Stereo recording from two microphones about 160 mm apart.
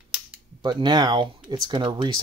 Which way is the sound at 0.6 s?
30° right (ahead or behind).